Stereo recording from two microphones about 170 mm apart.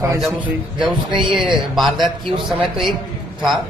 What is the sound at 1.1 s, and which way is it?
Speech, 30° right (ahead or behind).